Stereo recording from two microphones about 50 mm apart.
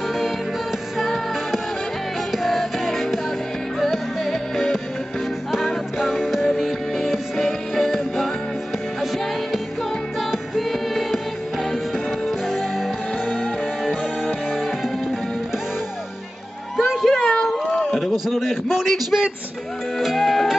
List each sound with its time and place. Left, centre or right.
0.9 s music: centre
5.5 s music: centre
10.3 s music: centre
12.3 s music: centre
16.7 s music: centre
17.2 s a sound: centre
18.0 s a sound: centre
20.0 s music: centre